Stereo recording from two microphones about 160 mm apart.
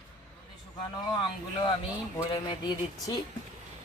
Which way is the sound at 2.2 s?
25° left (ahead or behind).